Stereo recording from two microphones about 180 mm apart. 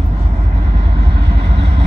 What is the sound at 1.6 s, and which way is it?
Vehicle, 70° right (ahead or behind).